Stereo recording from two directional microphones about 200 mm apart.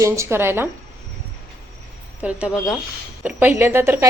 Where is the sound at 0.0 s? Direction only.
15° right (ahead or behind).